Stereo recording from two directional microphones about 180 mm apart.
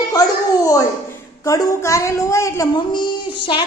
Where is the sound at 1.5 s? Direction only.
20° left (ahead or behind).